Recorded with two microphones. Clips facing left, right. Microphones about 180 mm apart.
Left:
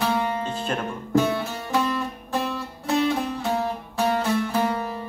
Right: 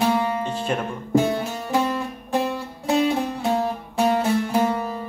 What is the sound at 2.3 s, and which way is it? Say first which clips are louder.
Music: right 5 dB; 15° right (ahead or behind).